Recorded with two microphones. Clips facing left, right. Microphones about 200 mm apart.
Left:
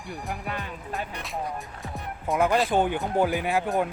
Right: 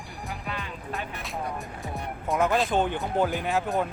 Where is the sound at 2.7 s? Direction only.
10° left (ahead or behind).